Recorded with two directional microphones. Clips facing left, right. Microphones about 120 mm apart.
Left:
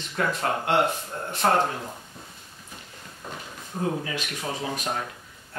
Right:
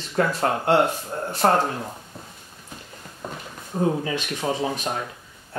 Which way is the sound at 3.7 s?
40° right (ahead or behind).